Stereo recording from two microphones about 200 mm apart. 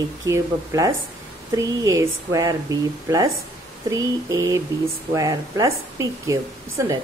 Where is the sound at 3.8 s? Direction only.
15° right (ahead or behind).